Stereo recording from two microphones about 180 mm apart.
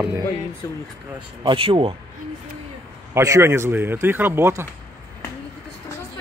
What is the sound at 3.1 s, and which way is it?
A man's voice, 15° right (ahead or behind).